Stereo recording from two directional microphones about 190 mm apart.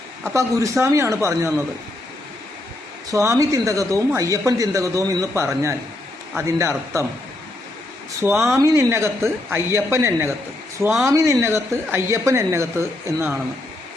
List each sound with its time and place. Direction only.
0.3 s speech: 15° right (ahead or behind)
3.1 s speech: 15° right (ahead or behind)
8.2 s speech: 15° right (ahead or behind)